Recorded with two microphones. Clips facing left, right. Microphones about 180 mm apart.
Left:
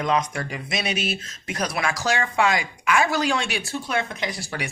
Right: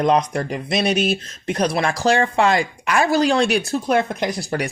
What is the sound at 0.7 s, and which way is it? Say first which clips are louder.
Speech: right 8 dB; 5° left (ahead or behind).